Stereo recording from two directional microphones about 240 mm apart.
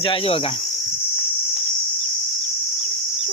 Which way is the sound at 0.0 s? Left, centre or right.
Left.